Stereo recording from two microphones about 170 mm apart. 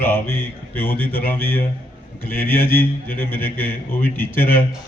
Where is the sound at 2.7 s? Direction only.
10° left (ahead or behind).